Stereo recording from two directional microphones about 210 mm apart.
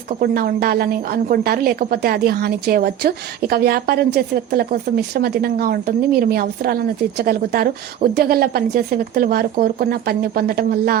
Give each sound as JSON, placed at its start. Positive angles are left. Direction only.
{"t": 0.2, "sound": "a woman's voice", "side_deg": -45}